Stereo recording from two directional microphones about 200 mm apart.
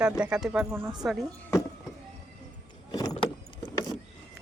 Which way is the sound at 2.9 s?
20° left (ahead or behind).